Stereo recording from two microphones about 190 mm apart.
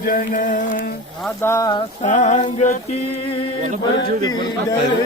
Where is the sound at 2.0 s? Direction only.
40° left (ahead or behind).